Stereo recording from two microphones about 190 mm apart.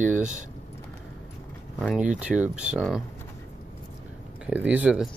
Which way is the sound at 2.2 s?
5° right (ahead or behind).